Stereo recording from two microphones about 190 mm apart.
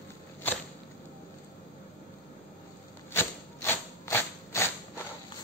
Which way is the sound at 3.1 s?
10° left (ahead or behind).